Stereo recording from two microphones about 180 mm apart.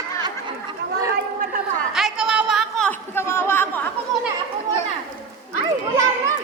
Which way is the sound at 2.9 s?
15° left (ahead or behind).